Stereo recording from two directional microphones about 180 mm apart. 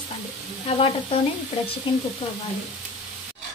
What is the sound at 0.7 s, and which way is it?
Speech, 30° left (ahead or behind).